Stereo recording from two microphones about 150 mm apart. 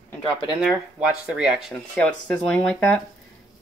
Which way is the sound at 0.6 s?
5° right (ahead or behind).